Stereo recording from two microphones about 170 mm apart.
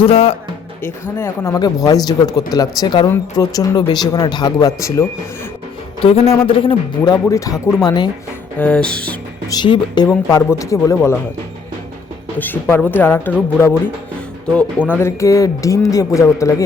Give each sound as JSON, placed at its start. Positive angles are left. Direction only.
{"t": 0.0, "sound": "speech", "side_deg": 35}
{"t": 0.8, "sound": "speech", "side_deg": 15}
{"t": 6.0, "sound": "speech", "side_deg": 35}
{"t": 8.5, "sound": "speech", "side_deg": 5}
{"t": 9.5, "sound": "speech", "side_deg": 25}
{"t": 12.4, "sound": "speech", "side_deg": 10}
{"t": 14.5, "sound": "speech", "side_deg": 10}